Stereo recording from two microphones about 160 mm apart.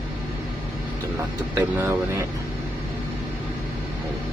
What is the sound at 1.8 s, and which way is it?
Speech, 15° right (ahead or behind).